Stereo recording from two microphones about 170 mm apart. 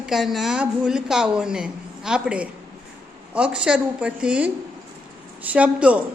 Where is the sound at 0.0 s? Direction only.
Centre (ahead or behind).